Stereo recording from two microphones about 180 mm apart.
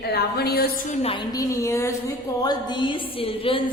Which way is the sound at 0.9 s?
35° left (ahead or behind).